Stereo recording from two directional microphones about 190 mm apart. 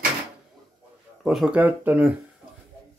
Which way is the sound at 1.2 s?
Centre (ahead or behind).